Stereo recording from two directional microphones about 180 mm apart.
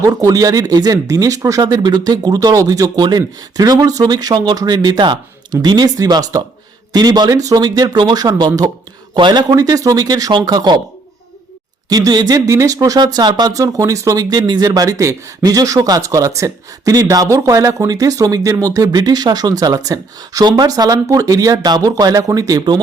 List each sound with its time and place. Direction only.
0.0 s speech: 20° right (ahead or behind)
11.9 s speech: 20° right (ahead or behind)